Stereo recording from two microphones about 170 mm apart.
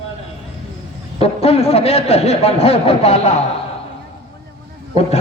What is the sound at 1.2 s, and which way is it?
A man's voice, 35° left (ahead or behind).